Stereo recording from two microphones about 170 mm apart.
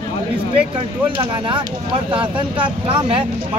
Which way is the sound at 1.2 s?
30° right (ahead or behind).